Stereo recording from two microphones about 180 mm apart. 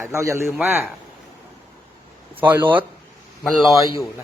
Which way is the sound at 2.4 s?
10° right (ahead or behind).